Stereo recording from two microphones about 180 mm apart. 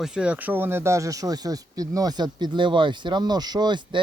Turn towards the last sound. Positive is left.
turn(degrees=-25)  # may be behind; listen again after turning